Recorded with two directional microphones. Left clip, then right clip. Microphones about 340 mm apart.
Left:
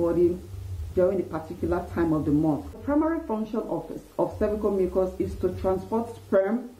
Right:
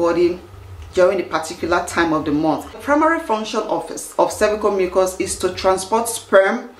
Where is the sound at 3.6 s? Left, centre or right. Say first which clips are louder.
Right 9 dB; centre.